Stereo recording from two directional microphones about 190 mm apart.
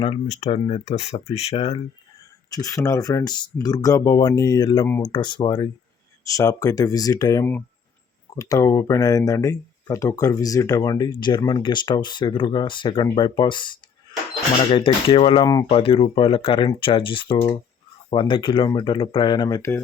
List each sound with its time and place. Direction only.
0.0 s speech: 30° left (ahead or behind)
2.5 s speech: 20° left (ahead or behind)